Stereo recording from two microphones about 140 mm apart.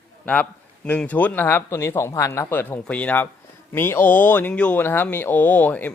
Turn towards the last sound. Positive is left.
turn(degrees=10)  # may be behind; listen again after turning